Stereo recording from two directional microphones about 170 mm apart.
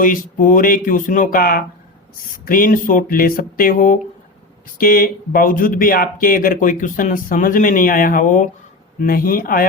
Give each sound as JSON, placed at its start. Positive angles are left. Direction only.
{"t": 0.0, "sound": "speech", "side_deg": 55}